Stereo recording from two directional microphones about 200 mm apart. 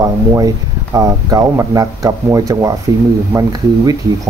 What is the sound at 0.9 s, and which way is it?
Speech, 15° right (ahead or behind).